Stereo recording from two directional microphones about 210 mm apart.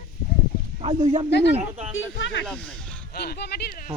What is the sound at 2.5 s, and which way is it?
Speech, 5° left (ahead or behind).